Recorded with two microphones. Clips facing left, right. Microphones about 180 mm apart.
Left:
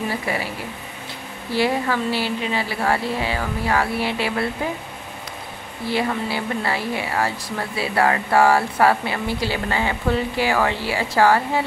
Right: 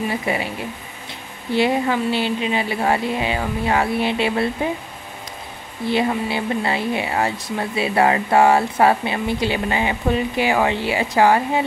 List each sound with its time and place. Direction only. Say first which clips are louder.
0.1 s speech: right 2 dB; 20° right (ahead or behind)
1.5 s speech: right 2 dB; 20° right (ahead or behind)
5.9 s speech: right 3 dB; 20° right (ahead or behind)